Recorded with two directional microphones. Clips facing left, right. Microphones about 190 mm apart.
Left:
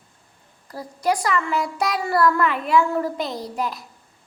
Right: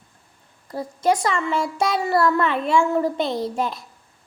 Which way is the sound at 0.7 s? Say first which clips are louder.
Right 3 dB; 25° right (ahead or behind).